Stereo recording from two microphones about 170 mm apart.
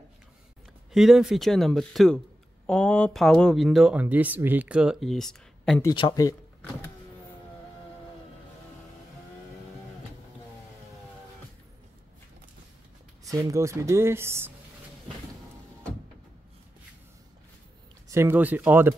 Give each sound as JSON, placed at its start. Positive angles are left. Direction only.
{"t": 0.9, "sound": "speech", "side_deg": 0}
{"t": 5.8, "sound": "speech", "side_deg": 20}
{"t": 13.2, "sound": "speech", "side_deg": -20}
{"t": 18.0, "sound": "speech", "side_deg": -15}